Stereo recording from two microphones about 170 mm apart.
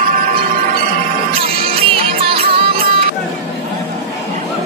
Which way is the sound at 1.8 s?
35° right (ahead or behind).